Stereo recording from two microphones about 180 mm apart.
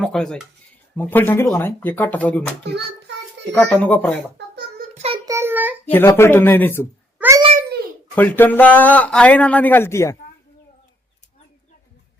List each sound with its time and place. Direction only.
0.0 s a man's voice: 5° left (ahead or behind)
3.1 s a sound: 70° right (ahead or behind)
3.5 s a man's voice: 5° left (ahead or behind)
4.9 s child singing: 35° right (ahead or behind)
5.2 s child singing: 15° right (ahead or behind)
5.8 s a man's voice: 10° left (ahead or behind)
7.2 s a sound: 15° right (ahead or behind)
8.1 s a man's voice: 10° left (ahead or behind)